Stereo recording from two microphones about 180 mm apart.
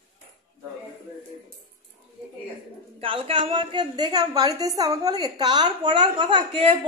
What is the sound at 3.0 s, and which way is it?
A woman's voice, 30° right (ahead or behind).